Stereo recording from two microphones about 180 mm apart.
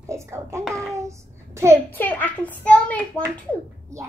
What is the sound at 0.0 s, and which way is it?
Speech, 15° right (ahead or behind).